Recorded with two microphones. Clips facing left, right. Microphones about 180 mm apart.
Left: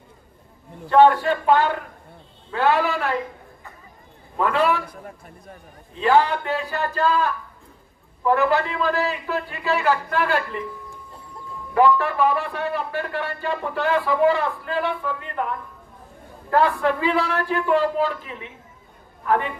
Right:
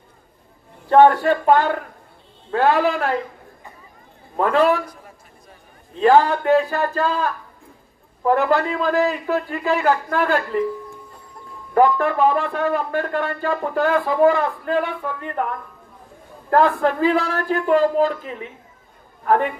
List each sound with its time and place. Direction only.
0.8 s speech: 45° right (ahead or behind)
4.4 s speech: 45° right (ahead or behind)
5.9 s speech: 45° right (ahead or behind)
11.7 s speech: 45° right (ahead or behind)